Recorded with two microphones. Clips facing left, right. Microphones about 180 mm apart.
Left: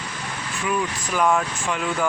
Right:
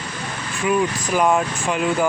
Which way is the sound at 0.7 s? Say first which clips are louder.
Right 6 dB; 20° right (ahead or behind).